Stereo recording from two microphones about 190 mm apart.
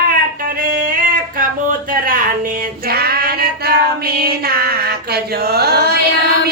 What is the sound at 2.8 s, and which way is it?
Child singing, 55° right (ahead or behind).